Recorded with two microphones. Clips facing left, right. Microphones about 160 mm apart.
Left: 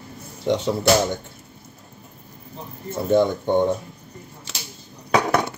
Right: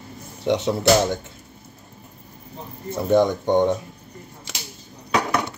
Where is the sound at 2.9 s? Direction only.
15° right (ahead or behind).